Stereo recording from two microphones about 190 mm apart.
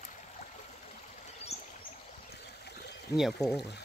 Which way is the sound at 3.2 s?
Centre (ahead or behind).